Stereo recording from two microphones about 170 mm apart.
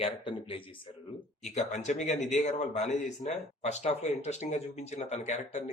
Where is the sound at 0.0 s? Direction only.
30° left (ahead or behind).